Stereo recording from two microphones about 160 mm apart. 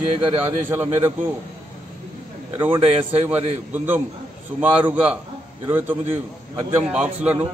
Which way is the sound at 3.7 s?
10° right (ahead or behind).